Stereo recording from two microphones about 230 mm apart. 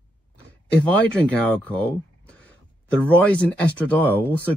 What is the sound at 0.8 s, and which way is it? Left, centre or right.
Speech, centre.